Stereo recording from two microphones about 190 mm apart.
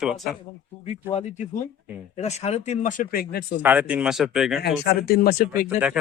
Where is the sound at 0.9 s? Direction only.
35° left (ahead or behind); by 3.6 s 50° left (ahead or behind).